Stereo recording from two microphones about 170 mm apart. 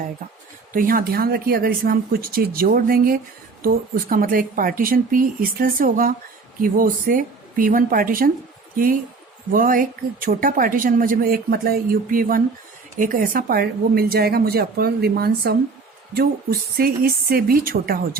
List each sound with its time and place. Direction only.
0.7 s speech: 55° right (ahead or behind)